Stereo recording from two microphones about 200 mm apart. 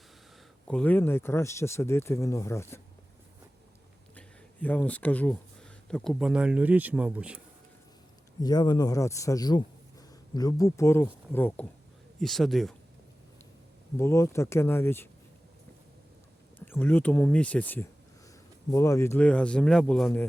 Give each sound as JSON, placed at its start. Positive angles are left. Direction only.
{"t": 0.7, "sound": "speech", "side_deg": 5}
{"t": 4.1, "sound": "speech", "side_deg": 5}
{"t": 8.4, "sound": "a man's voice", "side_deg": 20}
{"t": 13.9, "sound": "speech", "side_deg": 15}
{"t": 16.6, "sound": "speech", "side_deg": 10}